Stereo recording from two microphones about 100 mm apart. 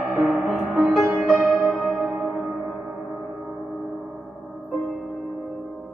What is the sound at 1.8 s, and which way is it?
Music, centre (ahead or behind).